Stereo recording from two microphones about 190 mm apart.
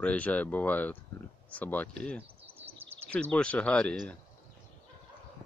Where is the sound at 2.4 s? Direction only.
30° right (ahead or behind).